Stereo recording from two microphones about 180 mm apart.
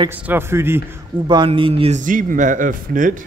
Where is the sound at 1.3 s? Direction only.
25° right (ahead or behind).